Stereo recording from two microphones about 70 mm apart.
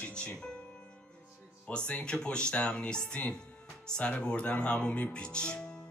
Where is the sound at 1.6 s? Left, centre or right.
Centre.